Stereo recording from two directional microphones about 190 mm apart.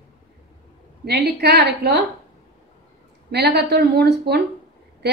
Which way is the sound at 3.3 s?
60° right (ahead or behind).